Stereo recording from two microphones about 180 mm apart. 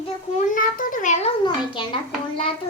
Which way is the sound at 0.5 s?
50° left (ahead or behind).